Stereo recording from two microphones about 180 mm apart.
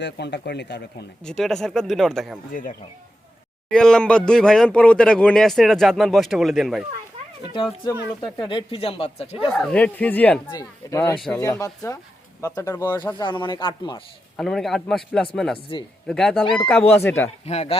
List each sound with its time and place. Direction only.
0.0 s speech: 70° left (ahead or behind)
1.2 s speech: 5° left (ahead or behind)
2.5 s speech: 50° left (ahead or behind)
3.7 s speech: 5° left (ahead or behind)
8.4 s speech: 25° left (ahead or behind)
9.5 s speech: 5° left (ahead or behind)
10.5 s speech: 20° left (ahead or behind)
13.2 s speech: 25° left (ahead or behind)
14.3 s speech: centre (ahead or behind)
15.7 s speech: 25° left (ahead or behind)
16.0 s speech: 5° left (ahead or behind)
17.4 s speech: 35° left (ahead or behind)